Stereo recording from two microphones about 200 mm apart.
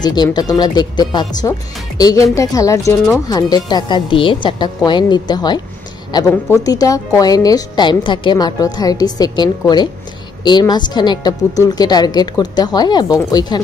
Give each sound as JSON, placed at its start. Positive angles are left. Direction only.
{"t": 0.0, "sound": "a woman's voice", "side_deg": 20}